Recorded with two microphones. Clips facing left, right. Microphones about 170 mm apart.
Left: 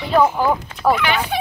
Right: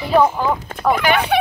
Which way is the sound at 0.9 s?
45° right (ahead or behind).